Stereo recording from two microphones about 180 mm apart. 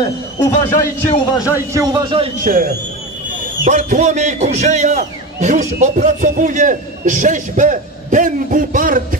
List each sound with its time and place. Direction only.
0.0 s a man's voice: 20° left (ahead or behind)
1.5 s a man's voice: 15° right (ahead or behind)
2.4 s a man's voice: 50° right (ahead or behind)